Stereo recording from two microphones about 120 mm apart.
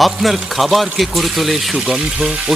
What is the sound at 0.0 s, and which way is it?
Speech, centre (ahead or behind).